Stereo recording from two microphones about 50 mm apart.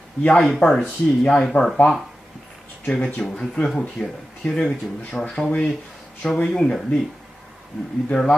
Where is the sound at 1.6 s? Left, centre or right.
Left.